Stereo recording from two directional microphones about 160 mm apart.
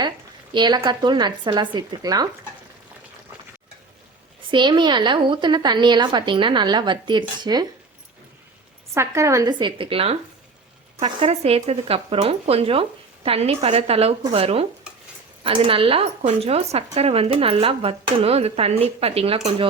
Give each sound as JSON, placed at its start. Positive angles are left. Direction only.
{"t": 0.5, "sound": "a woman's voice", "side_deg": -25}
{"t": 4.5, "sound": "a woman's voice", "side_deg": -30}
{"t": 9.0, "sound": "a woman's voice", "side_deg": -20}